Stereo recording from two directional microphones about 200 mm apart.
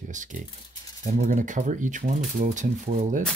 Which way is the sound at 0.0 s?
40° right (ahead or behind).